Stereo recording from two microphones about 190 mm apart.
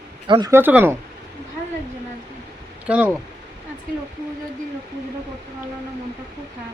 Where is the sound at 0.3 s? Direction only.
25° right (ahead or behind).